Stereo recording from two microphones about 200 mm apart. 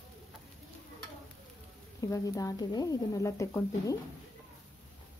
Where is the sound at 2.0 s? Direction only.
15° left (ahead or behind).